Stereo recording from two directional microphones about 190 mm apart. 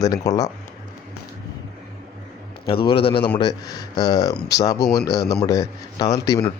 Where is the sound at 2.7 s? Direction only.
25° left (ahead or behind).